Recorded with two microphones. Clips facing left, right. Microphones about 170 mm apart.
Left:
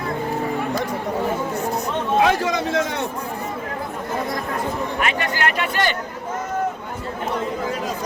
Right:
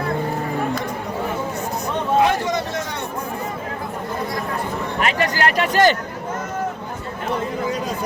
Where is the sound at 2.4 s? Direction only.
90° left.